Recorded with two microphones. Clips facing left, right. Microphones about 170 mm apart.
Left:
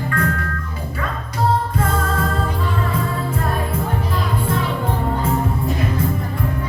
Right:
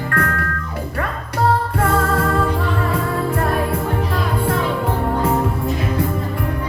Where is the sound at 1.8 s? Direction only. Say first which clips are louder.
Right 3 dB; 65° right (ahead or behind).